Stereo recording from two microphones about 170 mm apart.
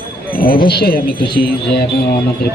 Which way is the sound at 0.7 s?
70° left (ahead or behind).